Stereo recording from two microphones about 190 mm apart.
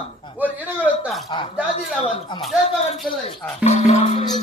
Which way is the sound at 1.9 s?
40° left (ahead or behind).